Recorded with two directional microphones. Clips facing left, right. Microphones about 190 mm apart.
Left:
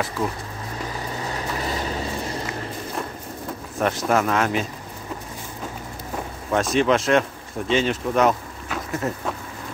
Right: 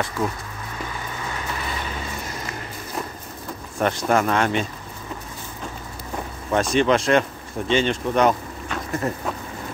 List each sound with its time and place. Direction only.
0.8 s vehicle: 35° left (ahead or behind)
3.7 s speech: centre (ahead or behind)
6.5 s speech: centre (ahead or behind)